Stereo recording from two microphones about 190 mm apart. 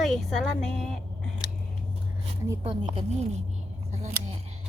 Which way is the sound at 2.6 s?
30° right (ahead or behind).